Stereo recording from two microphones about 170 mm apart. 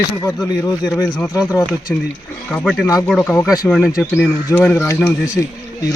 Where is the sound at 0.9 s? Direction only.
20° left (ahead or behind).